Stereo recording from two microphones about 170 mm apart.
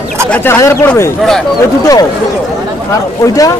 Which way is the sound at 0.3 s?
15° left (ahead or behind).